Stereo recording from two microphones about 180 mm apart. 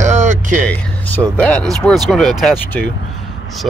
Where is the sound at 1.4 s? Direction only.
5° left (ahead or behind).